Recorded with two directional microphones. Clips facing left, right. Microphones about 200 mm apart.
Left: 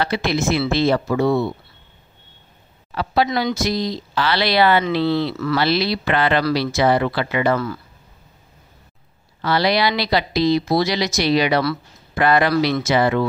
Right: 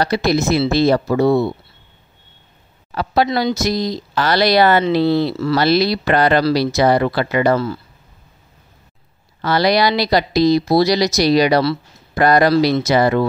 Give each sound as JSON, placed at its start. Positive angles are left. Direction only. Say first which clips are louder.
{"t": 0.0, "sound": "speech", "louder": "right 4 dB", "side_deg": -40}
{"t": 2.9, "sound": "speech", "louder": "right 2 dB", "side_deg": -45}
{"t": 9.4, "sound": "speech", "louder": "right 3 dB", "side_deg": -45}